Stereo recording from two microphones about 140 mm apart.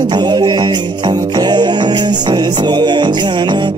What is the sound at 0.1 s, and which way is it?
Music, 30° right (ahead or behind).